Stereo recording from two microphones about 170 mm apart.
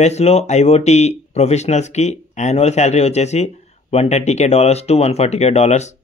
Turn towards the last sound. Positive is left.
turn(degrees=40)  # may be behind; listen again after turning